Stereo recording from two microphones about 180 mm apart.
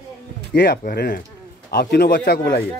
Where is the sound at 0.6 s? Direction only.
60° left (ahead or behind).